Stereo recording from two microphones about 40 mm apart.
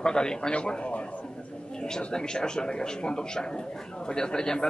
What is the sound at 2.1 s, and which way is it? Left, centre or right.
A man's voice, centre.